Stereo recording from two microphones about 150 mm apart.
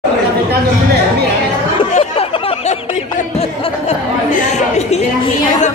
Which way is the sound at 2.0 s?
50° left (ahead or behind).